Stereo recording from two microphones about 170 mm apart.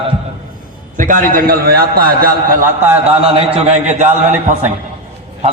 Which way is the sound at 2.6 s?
15° right (ahead or behind).